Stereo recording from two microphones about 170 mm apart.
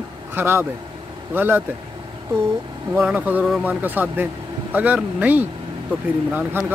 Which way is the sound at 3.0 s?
10° right (ahead or behind).